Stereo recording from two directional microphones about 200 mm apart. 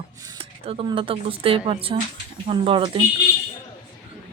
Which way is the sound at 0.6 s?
30° right (ahead or behind).